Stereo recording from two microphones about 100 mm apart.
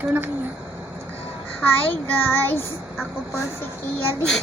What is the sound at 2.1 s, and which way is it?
Child singing, 20° left (ahead or behind).